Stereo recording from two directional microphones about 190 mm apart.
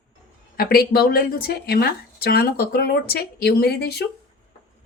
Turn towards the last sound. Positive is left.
turn(degrees=60)  # may be behind; listen again after turning